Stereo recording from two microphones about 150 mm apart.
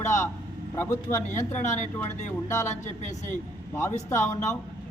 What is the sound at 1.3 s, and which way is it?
Speech, 50° left (ahead or behind).